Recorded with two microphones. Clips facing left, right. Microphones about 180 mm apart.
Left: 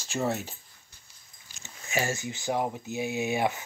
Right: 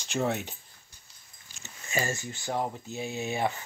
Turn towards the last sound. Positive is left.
turn(degrees=15)  # may be behind; listen again after turning